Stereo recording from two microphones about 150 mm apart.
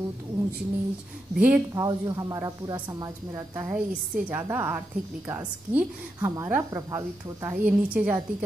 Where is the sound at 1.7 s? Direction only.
25° right (ahead or behind).